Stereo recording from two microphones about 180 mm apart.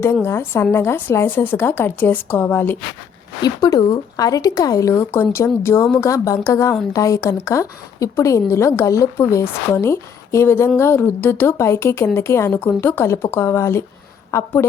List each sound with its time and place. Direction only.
0.0 s speech: 15° left (ahead or behind)
3.4 s a woman's voice: 20° left (ahead or behind)